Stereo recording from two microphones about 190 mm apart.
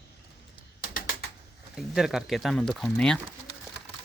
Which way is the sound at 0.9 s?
50° left (ahead or behind).